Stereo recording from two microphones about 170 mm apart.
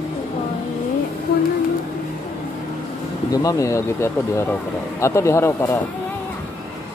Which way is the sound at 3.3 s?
20° left (ahead or behind).